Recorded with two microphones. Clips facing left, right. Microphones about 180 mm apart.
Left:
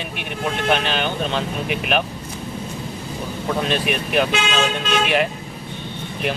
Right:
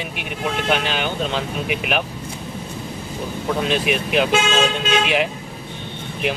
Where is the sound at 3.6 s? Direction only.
15° right (ahead or behind).